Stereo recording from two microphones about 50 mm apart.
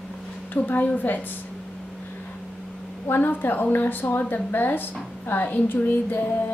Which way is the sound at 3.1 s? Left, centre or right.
Left.